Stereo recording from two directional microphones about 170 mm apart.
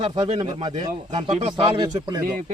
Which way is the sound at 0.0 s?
35° right (ahead or behind).